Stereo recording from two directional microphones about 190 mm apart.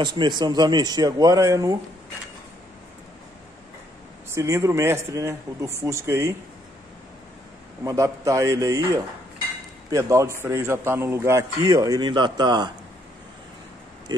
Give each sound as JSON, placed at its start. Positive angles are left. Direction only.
{"t": 0.0, "sound": "speech", "side_deg": -25}
{"t": 4.3, "sound": "speech", "side_deg": -15}
{"t": 7.8, "sound": "speech", "side_deg": -15}